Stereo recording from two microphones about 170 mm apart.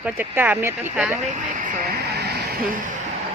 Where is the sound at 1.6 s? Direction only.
50° right (ahead or behind).